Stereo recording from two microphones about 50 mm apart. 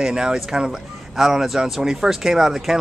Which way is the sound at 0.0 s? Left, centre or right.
Centre.